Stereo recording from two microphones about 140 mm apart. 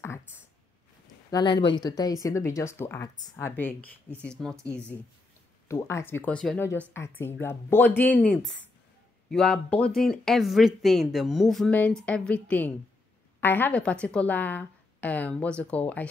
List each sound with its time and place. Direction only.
1.3 s a woman's voice: 30° left (ahead or behind); by 4.9 s 10° left (ahead or behind)
5.7 s a woman's voice: 20° left (ahead or behind)
6.6 s a woman's voice: 15° left (ahead or behind)